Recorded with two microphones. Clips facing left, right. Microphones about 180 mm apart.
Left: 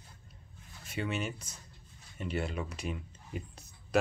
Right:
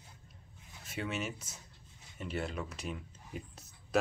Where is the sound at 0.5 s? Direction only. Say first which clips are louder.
Left 1 dB; 20° right (ahead or behind).